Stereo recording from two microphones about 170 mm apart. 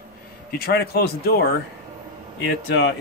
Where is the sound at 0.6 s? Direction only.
70° left (ahead or behind).